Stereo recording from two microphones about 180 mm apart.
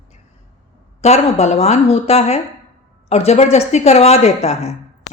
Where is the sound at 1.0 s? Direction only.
35° left (ahead or behind).